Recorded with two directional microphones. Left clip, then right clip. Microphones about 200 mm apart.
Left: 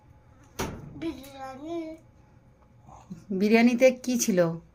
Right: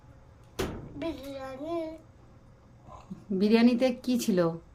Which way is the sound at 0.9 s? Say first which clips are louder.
Right 1 dB; 30° right (ahead or behind).